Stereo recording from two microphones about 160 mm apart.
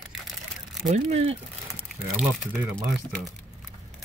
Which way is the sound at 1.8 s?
Centre (ahead or behind).